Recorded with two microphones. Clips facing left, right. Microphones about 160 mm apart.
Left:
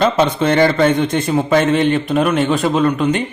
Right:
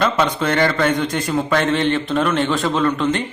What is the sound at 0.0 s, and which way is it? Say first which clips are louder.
A man's voice: left 4 dB; 25° left (ahead or behind).